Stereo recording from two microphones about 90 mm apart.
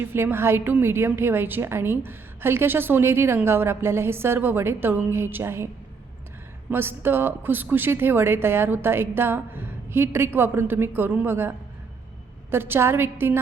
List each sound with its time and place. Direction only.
0.0 s a woman's voice: 25° right (ahead or behind)
6.7 s a woman's voice: 25° right (ahead or behind)